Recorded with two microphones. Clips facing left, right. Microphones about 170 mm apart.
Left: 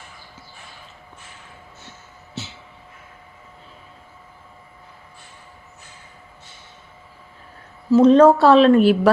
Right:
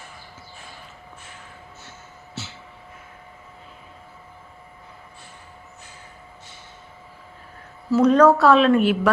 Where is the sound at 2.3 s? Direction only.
15° left (ahead or behind).